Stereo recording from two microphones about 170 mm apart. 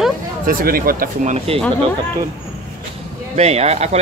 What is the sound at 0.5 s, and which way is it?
Speech, 60° right (ahead or behind).